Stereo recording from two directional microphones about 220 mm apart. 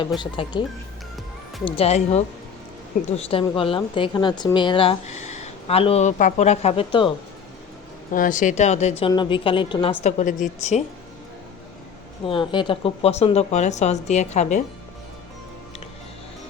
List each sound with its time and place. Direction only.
0.2 s a woman's voice: 20° left (ahead or behind)
1.6 s a woman's voice: 25° left (ahead or behind)
8.1 s a woman's voice: 35° left (ahead or behind)
12.2 s a woman's voice: 20° left (ahead or behind)